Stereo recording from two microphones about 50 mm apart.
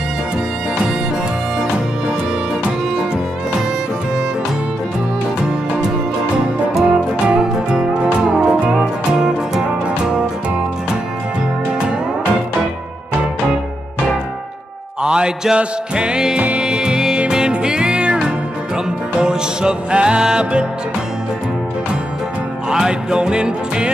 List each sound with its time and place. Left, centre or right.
6.7 s music: centre
15.0 s music: centre
22.7 s music: centre